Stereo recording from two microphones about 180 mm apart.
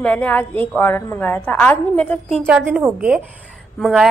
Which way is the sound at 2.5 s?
5° right (ahead or behind).